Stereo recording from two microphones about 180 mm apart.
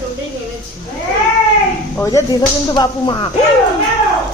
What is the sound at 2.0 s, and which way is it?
A woman's voice, 15° left (ahead or behind).